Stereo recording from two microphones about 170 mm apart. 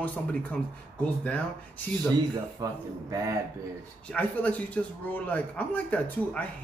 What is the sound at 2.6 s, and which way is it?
Speech, 20° right (ahead or behind).